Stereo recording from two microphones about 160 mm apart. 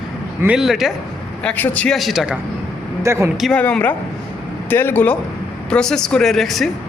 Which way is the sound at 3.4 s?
5° left (ahead or behind).